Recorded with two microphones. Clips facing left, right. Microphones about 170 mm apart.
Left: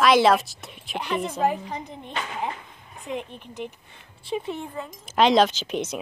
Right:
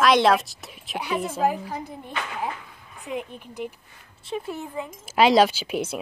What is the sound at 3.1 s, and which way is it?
Speech, 10° right (ahead or behind).